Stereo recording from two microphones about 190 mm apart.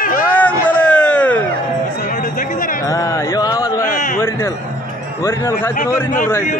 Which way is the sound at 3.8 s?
40° left (ahead or behind).